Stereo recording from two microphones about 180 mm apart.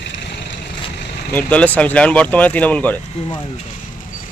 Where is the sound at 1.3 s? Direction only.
10° left (ahead or behind).